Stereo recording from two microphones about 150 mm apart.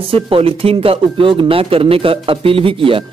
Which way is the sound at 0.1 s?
40° right (ahead or behind).